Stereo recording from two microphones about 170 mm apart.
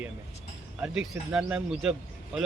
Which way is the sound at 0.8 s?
5° right (ahead or behind).